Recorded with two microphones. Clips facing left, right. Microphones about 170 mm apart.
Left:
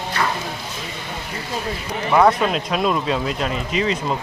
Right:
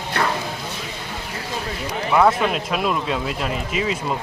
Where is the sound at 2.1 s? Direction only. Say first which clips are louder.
Left 1 dB; centre (ahead or behind).